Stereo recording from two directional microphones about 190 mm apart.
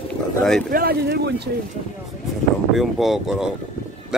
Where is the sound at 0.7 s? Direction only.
55° right (ahead or behind).